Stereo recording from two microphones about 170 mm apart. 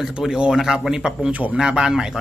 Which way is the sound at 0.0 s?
Centre (ahead or behind).